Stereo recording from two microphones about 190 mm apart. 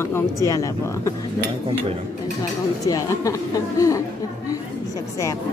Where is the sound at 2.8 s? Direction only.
15° left (ahead or behind).